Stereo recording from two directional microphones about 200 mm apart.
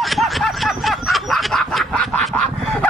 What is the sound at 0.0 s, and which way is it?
Snicker, centre (ahead or behind).